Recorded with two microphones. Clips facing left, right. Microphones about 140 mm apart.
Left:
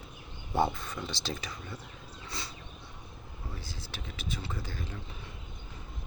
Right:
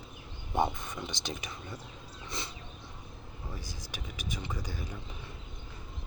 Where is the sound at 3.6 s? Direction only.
15° right (ahead or behind).